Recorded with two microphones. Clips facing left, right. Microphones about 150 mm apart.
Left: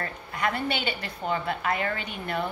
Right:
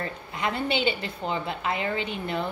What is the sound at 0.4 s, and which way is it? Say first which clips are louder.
A woman's voice: right 2 dB; 20° right (ahead or behind).